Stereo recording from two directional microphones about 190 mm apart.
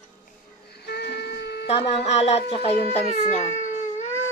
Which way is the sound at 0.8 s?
60° left (ahead or behind).